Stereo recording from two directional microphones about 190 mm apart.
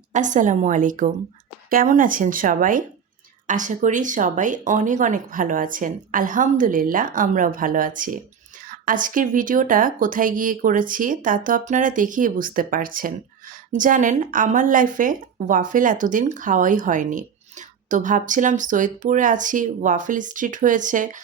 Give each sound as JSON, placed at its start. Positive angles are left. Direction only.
{"t": 0.1, "sound": "a woman's voice", "side_deg": -40}